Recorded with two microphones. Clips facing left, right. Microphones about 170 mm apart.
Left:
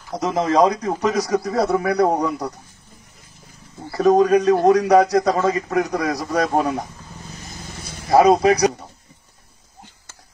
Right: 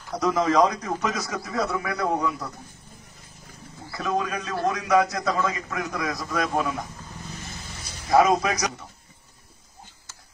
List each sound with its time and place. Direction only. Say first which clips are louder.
0.2 s a man's voice: left 3 dB; 25° left (ahead or behind)
3.9 s a man's voice: left 13 dB; 35° left (ahead or behind)
7.3 s vehicle: left 3 dB; 50° left (ahead or behind)
8.1 s speech: left 6 dB; 35° left (ahead or behind)